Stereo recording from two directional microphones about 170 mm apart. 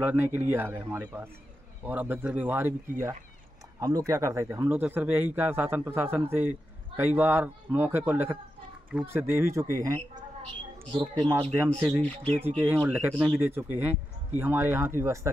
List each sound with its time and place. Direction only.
0.0 s speech: 10° right (ahead or behind)
3.8 s speech: 20° right (ahead or behind)
10.9 s speech: 30° right (ahead or behind)
11.2 s speech: 15° right (ahead or behind)